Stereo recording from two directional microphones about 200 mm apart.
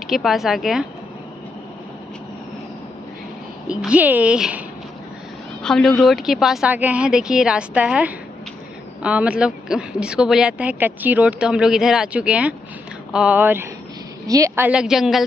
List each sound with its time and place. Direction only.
0.0 s a woman's voice: centre (ahead or behind)
3.6 s a woman's voice: 5° right (ahead or behind)